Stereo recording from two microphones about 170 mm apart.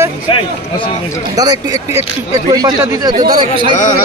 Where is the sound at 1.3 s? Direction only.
20° right (ahead or behind).